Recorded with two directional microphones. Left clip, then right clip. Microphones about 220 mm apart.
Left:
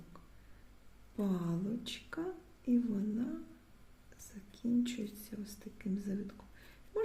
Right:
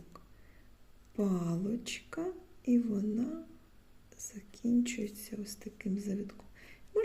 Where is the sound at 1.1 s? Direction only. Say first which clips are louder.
Right 4 dB; 20° right (ahead or behind).